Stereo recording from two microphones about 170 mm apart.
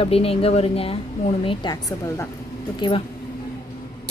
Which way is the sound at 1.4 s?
25° left (ahead or behind).